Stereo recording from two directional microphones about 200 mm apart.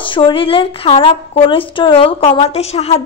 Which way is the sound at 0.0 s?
25° left (ahead or behind).